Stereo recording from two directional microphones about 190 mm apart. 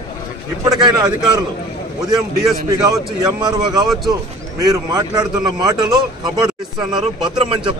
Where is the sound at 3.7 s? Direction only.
Centre (ahead or behind).